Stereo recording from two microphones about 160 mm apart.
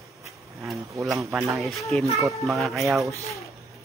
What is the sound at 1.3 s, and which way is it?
Speech, centre (ahead or behind).